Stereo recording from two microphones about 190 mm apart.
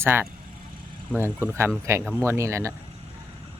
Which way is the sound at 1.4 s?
15° right (ahead or behind).